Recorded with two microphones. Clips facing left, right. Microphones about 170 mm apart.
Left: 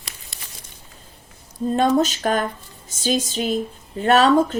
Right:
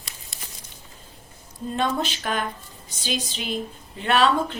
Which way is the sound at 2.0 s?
45° left (ahead or behind).